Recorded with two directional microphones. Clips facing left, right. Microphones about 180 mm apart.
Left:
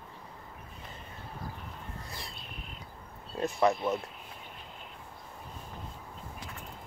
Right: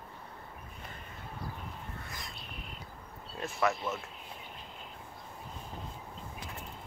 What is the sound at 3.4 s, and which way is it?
Speech, 35° left (ahead or behind).